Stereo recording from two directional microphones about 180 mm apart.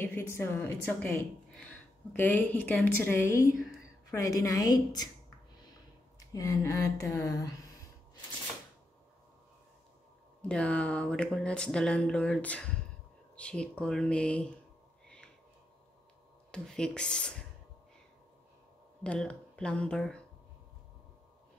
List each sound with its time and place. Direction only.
0.0 s a woman's voice: 15° left (ahead or behind)
10.5 s speech: 5° left (ahead or behind)
16.5 s speech: 5° left (ahead or behind)
19.0 s speech: 5° left (ahead or behind)